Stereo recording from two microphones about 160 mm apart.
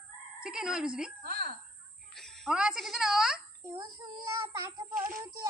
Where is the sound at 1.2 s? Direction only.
75° right (ahead or behind).